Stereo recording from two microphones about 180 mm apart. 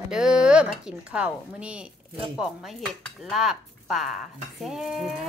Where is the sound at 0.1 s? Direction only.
5° right (ahead or behind).